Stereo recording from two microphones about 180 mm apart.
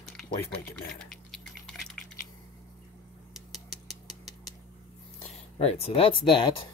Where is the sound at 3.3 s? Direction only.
Centre (ahead or behind).